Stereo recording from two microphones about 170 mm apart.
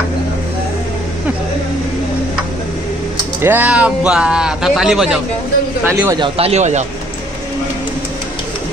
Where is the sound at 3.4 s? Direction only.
10° right (ahead or behind).